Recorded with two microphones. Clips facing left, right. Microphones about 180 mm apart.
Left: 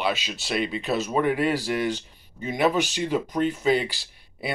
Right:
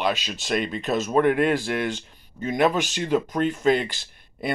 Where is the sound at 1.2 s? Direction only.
55° right (ahead or behind).